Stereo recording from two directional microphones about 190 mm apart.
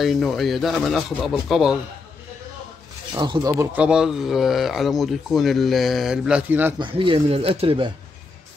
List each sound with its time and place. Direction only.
0.0 s speech: centre (ahead or behind)
3.2 s speech: 20° right (ahead or behind)
3.7 s speech: 5° right (ahead or behind)
6.8 s speech: 25° right (ahead or behind)